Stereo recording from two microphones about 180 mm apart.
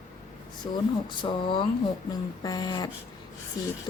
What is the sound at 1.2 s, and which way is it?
A woman's voice, 25° left (ahead or behind).